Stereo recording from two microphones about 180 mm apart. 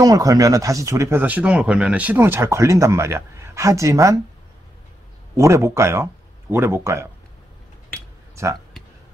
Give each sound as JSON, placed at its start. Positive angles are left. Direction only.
{"t": 0.0, "sound": "speech", "side_deg": -20}
{"t": 5.3, "sound": "speech", "side_deg": -15}
{"t": 8.4, "sound": "speech", "side_deg": -15}